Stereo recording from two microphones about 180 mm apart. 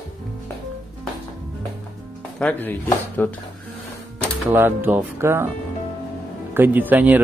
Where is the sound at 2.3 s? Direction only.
10° left (ahead or behind).